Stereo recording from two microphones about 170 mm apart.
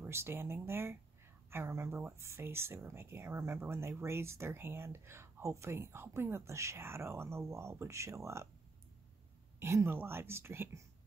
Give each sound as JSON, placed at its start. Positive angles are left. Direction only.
{"t": 0.0, "sound": "speech", "side_deg": -15}
{"t": 9.6, "sound": "speech", "side_deg": -15}